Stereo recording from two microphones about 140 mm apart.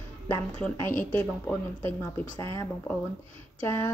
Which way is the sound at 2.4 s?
20° left (ahead or behind).